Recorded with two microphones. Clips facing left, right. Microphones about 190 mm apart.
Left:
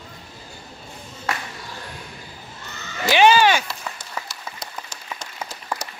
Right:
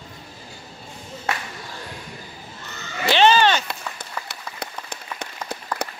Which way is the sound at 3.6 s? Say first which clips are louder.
Right 1 dB; 60° right (ahead or behind).